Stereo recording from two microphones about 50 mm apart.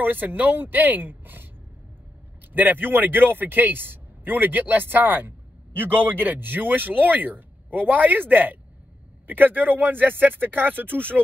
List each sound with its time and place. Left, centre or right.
0.0 s speech: right
2.5 s speech: right